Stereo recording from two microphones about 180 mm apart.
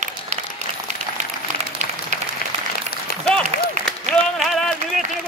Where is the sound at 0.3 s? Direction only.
35° right (ahead or behind).